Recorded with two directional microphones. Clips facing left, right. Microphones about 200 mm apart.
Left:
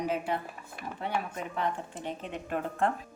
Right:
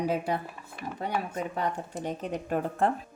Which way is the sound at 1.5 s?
40° right (ahead or behind).